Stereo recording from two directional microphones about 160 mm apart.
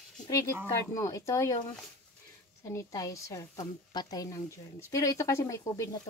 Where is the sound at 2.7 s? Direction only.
20° left (ahead or behind).